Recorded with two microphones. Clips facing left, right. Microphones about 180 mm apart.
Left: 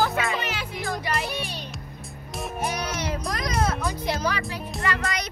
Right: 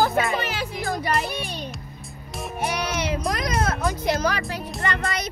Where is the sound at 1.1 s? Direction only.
Centre (ahead or behind).